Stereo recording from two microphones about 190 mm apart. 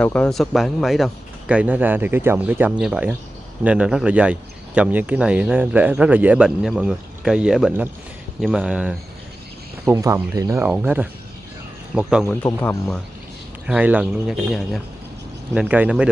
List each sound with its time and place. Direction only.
0.0 s speech: 5° left (ahead or behind)
9.8 s speech: 15° right (ahead or behind)
13.7 s speech: 5° right (ahead or behind)